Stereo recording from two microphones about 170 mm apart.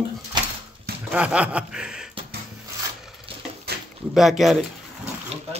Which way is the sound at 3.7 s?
70° right (ahead or behind).